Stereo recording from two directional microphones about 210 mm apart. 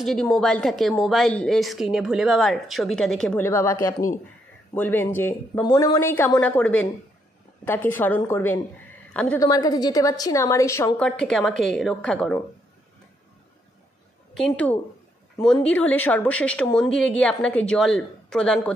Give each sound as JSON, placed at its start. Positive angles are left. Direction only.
{"t": 0.0, "sound": "a woman's voice", "side_deg": 0}
{"t": 9.4, "sound": "a woman's voice", "side_deg": 15}
{"t": 11.1, "sound": "a woman's voice", "side_deg": 0}
{"t": 14.3, "sound": "a woman's voice", "side_deg": 5}